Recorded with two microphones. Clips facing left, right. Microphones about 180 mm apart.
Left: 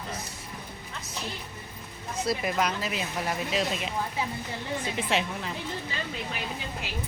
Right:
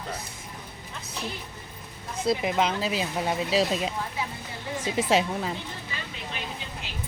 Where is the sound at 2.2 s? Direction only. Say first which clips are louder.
Right 3 dB; 20° right (ahead or behind).